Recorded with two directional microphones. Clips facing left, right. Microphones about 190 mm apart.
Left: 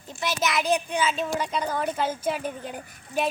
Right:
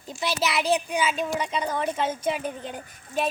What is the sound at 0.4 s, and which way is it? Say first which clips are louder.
A child's voice: even; 5° right (ahead or behind).